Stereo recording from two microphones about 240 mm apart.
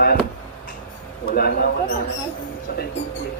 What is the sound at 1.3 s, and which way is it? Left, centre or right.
Speech, left.